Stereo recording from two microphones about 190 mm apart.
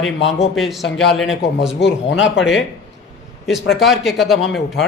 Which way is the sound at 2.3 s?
Centre (ahead or behind).